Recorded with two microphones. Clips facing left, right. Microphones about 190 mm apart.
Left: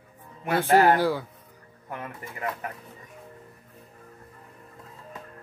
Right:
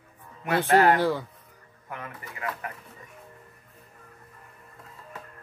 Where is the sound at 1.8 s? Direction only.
25° left (ahead or behind).